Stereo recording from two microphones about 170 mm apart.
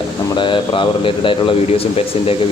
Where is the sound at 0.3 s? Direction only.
30° left (ahead or behind).